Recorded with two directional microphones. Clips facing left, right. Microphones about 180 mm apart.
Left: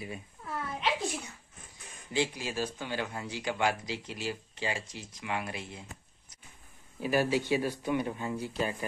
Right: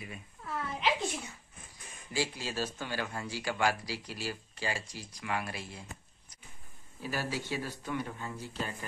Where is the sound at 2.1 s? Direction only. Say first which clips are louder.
Left 3 dB; 20° left (ahead or behind).